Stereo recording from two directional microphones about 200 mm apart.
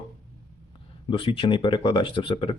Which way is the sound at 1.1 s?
25° left (ahead or behind).